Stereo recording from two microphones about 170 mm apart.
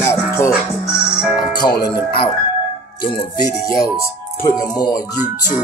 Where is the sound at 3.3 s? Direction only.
20° left (ahead or behind).